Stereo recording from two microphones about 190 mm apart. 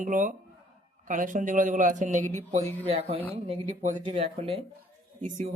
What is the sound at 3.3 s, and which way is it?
Speech, 30° right (ahead or behind).